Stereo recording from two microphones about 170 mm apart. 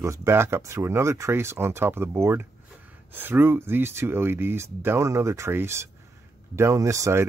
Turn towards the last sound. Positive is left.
turn(degrees=-15)  # may be behind; listen again after turning